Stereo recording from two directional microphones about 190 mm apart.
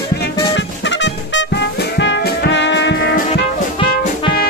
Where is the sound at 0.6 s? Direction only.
70° left (ahead or behind).